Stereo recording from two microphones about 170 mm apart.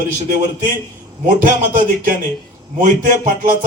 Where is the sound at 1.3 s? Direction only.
50° right (ahead or behind).